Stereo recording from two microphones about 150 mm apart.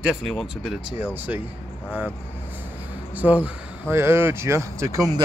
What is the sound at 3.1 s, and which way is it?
Speech, 10° right (ahead or behind).